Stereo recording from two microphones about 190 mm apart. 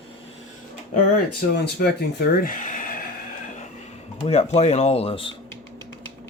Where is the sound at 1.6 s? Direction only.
55° left (ahead or behind).